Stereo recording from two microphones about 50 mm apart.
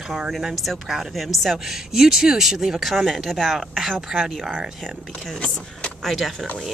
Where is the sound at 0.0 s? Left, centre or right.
Centre.